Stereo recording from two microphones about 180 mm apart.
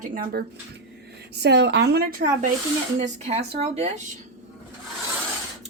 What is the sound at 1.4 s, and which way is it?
A woman's voice, 70° right (ahead or behind).